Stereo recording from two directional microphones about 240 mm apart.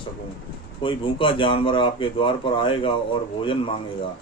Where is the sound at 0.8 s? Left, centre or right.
Left.